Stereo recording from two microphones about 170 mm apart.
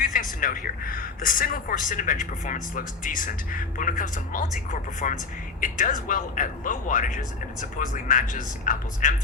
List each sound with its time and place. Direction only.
0.0 s a man's voice: 55° left (ahead or behind)